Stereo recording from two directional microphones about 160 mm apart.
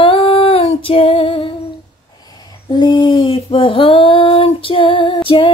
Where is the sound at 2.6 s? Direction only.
30° left (ahead or behind).